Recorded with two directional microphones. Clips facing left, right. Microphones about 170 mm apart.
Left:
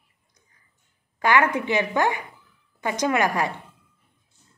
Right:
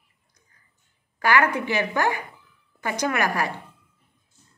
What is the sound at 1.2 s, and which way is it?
Speech, 20° left (ahead or behind).